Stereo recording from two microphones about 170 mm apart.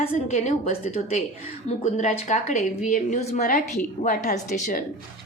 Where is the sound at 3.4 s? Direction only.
55° left (ahead or behind).